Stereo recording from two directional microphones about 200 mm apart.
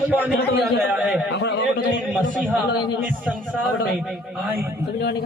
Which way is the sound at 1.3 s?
65° left (ahead or behind).